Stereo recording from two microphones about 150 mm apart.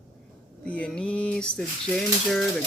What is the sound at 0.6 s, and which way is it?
Speech, 5° left (ahead or behind).